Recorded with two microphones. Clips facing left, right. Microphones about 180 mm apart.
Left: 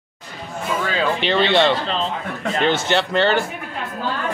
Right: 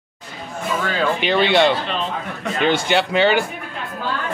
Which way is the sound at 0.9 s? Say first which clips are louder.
Right 1 dB; 5° right (ahead or behind).